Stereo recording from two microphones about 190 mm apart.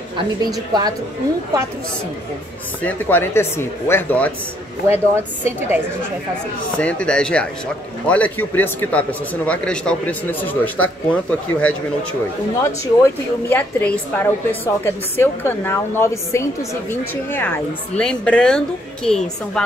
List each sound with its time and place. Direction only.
0.4 s a woman's voice: 20° right (ahead or behind)
2.8 s a man's voice: 10° left (ahead or behind)
4.8 s a woman's voice: 10° right (ahead or behind)
6.8 s a man's voice: 5° left (ahead or behind)
13.5 s a man's voice: 10° left (ahead or behind)